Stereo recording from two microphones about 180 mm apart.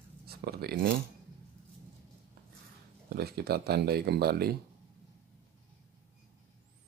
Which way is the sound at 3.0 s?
60° right (ahead or behind).